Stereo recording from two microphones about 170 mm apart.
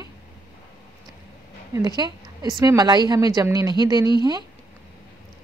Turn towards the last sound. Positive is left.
turn(degrees=-25)  # may be behind; listen again after turning